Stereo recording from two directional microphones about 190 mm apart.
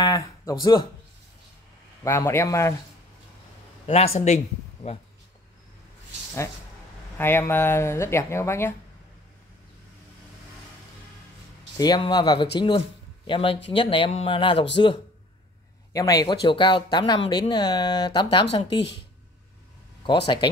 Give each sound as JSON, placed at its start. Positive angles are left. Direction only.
{"t": 0.0, "sound": "speech", "side_deg": 15}
{"t": 2.0, "sound": "speech", "side_deg": 15}
{"t": 3.8, "sound": "a man's voice", "side_deg": 30}
{"t": 7.2, "sound": "speech", "side_deg": 10}
{"t": 11.7, "sound": "speech", "side_deg": 20}